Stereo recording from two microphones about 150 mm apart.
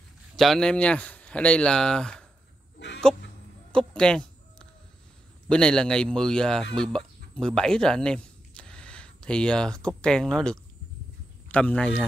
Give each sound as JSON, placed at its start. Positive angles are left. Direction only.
{"t": 0.4, "sound": "speech", "side_deg": 5}
{"t": 3.7, "sound": "a sound", "side_deg": 5}
{"t": 5.5, "sound": "speech", "side_deg": 5}